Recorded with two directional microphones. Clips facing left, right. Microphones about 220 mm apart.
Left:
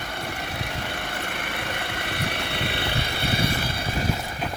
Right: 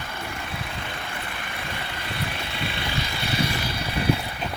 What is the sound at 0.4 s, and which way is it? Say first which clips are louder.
Vehicle: left 2 dB; 70° left (ahead or behind).